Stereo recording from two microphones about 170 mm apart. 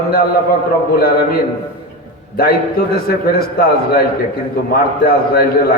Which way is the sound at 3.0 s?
65° left (ahead or behind).